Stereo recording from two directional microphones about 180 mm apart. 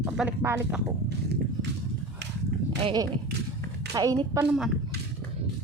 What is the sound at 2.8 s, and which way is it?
Speech, 20° right (ahead or behind).